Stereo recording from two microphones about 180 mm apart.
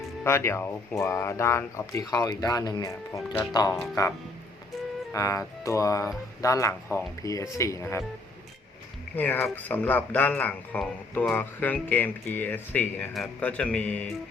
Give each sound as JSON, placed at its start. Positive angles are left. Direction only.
{"t": 0.3, "sound": "speech", "side_deg": 15}
{"t": 5.1, "sound": "speech", "side_deg": 20}
{"t": 9.1, "sound": "speech", "side_deg": 10}